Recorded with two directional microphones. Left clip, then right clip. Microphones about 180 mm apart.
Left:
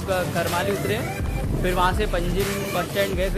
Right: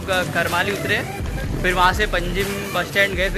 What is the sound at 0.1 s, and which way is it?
Speech, 5° right (ahead or behind).